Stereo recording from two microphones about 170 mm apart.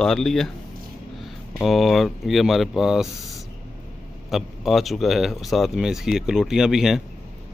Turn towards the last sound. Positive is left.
turn(degrees=-5)  # may be behind; listen again after turning